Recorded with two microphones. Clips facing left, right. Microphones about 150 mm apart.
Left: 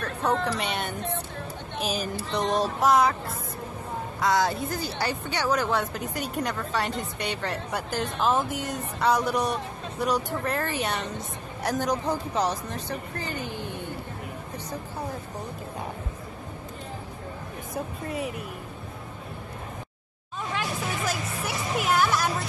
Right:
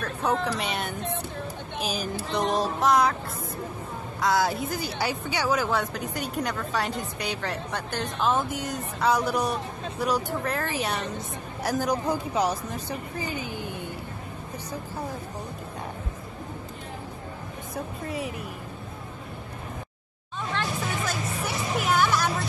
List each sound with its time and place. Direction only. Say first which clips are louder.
0.0 s a woman's voice: even; centre (ahead or behind)
4.2 s a woman's voice: even; 5° right (ahead or behind)
18.0 s a woman's voice: even; centre (ahead or behind)
21.1 s music: even; centre (ahead or behind)